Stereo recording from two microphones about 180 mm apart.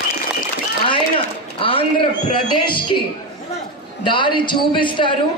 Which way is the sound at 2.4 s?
25° left (ahead or behind).